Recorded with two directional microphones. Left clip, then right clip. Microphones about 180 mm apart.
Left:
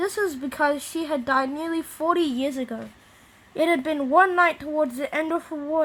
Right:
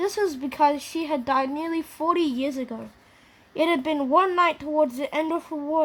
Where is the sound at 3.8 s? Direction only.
30° right (ahead or behind).